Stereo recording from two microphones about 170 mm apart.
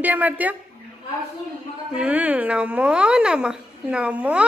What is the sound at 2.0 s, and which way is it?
A woman's voice, 10° right (ahead or behind).